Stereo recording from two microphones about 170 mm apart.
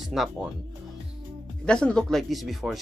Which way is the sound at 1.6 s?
5° left (ahead or behind).